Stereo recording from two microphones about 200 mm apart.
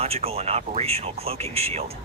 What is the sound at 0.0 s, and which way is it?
Speech, 30° right (ahead or behind).